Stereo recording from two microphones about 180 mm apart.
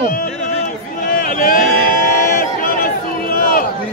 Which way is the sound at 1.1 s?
50° left (ahead or behind).